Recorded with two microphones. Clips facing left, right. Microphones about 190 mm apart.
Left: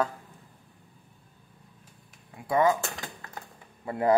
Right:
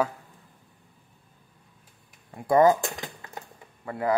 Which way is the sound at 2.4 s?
45° right (ahead or behind).